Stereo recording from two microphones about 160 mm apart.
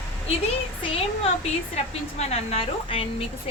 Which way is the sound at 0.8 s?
35° left (ahead or behind).